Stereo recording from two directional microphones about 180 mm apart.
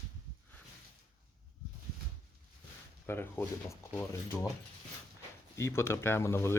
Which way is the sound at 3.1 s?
10° left (ahead or behind).